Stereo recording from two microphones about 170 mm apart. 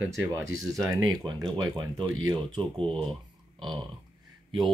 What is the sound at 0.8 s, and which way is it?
Speech, 20° right (ahead or behind).